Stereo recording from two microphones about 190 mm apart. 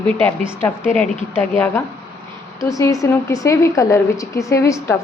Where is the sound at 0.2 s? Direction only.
10° left (ahead or behind).